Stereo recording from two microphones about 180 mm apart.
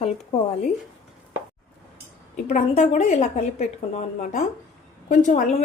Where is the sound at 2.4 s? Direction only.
40° left (ahead or behind).